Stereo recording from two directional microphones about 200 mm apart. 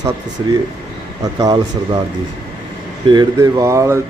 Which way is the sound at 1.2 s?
20° right (ahead or behind).